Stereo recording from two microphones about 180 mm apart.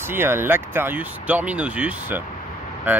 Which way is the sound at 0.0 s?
10° right (ahead or behind).